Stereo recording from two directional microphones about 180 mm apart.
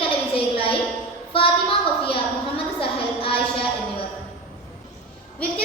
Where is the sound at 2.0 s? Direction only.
30° left (ahead or behind).